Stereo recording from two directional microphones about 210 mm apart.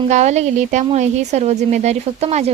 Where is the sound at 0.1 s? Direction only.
35° right (ahead or behind).